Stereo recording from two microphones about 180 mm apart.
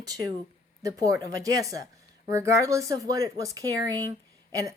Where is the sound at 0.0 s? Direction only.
20° right (ahead or behind).